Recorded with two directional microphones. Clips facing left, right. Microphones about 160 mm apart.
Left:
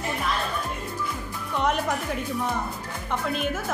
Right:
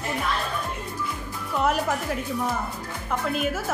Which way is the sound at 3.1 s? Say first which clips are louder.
Right 1 dB; 5° right (ahead or behind).